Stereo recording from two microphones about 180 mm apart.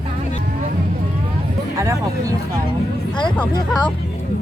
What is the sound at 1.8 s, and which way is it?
Speech, 15° right (ahead or behind).